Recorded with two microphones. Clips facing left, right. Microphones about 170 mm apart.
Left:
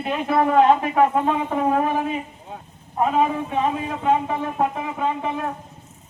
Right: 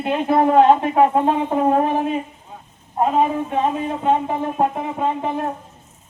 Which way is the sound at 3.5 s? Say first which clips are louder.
Right 2 dB; 30° right (ahead or behind).